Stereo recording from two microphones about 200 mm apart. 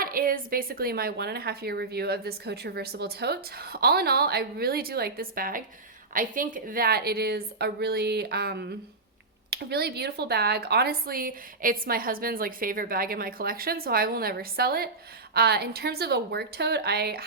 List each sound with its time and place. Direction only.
0.0 s a woman's voice: 45° right (ahead or behind)